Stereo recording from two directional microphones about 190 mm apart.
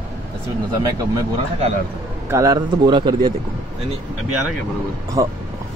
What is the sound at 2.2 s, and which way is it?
Speech, 15° right (ahead or behind).